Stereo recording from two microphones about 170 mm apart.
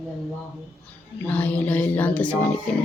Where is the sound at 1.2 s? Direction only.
10° left (ahead or behind).